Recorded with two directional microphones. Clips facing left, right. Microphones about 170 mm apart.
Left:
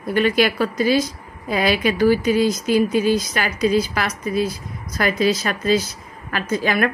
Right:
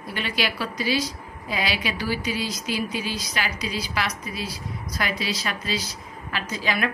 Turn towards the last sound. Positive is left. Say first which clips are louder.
# left 7 dB
turn(degrees=50)  # may be behind; listen again after turning